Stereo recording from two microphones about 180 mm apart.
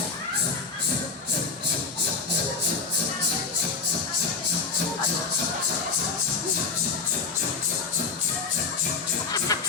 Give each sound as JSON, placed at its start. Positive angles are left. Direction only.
{"t": 9.5, "sound": "music", "side_deg": 20}